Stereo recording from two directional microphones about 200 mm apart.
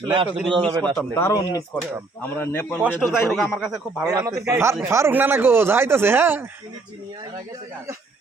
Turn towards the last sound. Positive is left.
turn(degrees=-10)  # may be behind; listen again after turning